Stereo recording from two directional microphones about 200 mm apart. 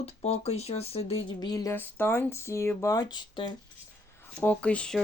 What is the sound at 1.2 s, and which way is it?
Speech, 20° left (ahead or behind).